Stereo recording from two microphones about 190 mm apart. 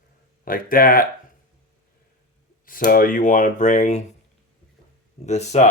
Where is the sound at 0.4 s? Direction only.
50° left (ahead or behind).